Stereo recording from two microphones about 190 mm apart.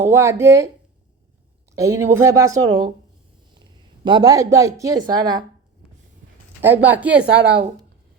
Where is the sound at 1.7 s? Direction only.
15° right (ahead or behind).